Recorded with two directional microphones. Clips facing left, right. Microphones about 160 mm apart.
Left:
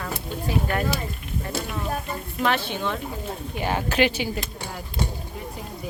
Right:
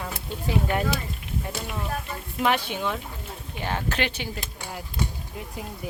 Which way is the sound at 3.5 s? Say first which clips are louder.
Left 5 dB; 10° left (ahead or behind).